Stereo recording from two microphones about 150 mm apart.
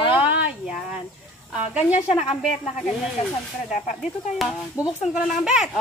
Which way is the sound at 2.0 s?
45° left (ahead or behind).